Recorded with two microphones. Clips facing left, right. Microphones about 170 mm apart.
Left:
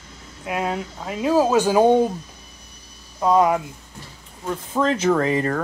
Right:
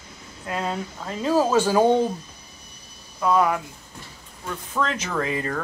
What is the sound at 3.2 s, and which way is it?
Speech, 20° left (ahead or behind).